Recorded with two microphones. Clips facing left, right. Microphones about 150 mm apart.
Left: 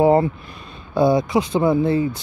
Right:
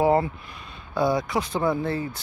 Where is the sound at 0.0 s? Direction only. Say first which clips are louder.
Left 5 dB; 25° left (ahead or behind).